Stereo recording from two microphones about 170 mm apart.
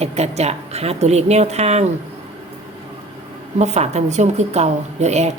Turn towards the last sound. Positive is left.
turn(degrees=-40)  # may be behind; listen again after turning